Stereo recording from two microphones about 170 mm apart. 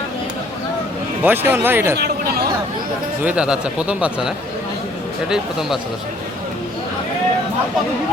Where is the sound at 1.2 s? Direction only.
10° right (ahead or behind).